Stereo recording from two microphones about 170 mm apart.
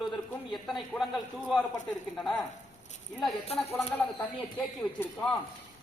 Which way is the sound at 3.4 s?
35° left (ahead or behind).